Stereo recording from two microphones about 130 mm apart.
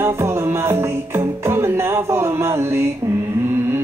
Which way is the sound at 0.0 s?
20° right (ahead or behind).